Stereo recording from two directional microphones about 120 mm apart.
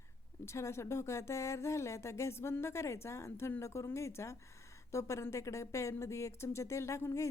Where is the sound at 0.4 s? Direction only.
25° left (ahead or behind).